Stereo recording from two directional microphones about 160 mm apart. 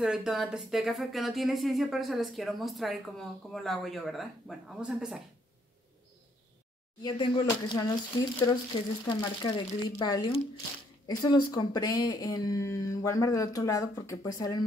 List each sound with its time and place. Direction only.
0.0 s speech: 5° right (ahead or behind)
7.0 s speech: 30° left (ahead or behind)